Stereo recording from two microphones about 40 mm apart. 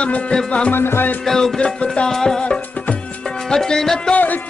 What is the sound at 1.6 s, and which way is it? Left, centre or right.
Speech, left.